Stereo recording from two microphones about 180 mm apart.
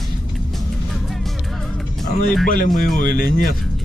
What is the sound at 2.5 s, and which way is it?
Speech, 50° left (ahead or behind).